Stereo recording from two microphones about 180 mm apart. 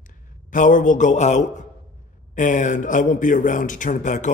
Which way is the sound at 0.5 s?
45° left (ahead or behind).